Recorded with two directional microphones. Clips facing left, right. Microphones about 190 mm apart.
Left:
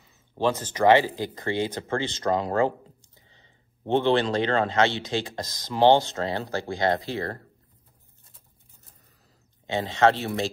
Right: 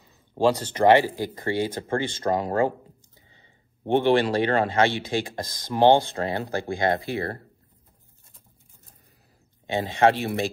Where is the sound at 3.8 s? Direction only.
15° right (ahead or behind).